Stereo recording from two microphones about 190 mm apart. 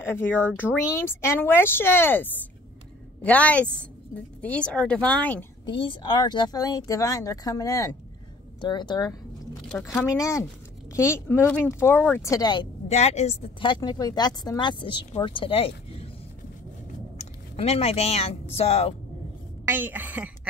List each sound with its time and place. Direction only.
0.0 s speech: 10° left (ahead or behind)
3.3 s speech: 5° left (ahead or behind)
5.7 s a woman's voice: 25° left (ahead or behind)
9.7 s speech: 5° left (ahead or behind)
12.3 s a woman's voice: 20° left (ahead or behind)
12.8 s a woman's voice: 35° left (ahead or behind)
17.2 s speech: 35° left (ahead or behind)
19.6 s a woman's voice: 10° right (ahead or behind)